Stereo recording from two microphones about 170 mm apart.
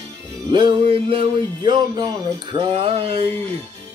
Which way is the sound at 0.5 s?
30° right (ahead or behind).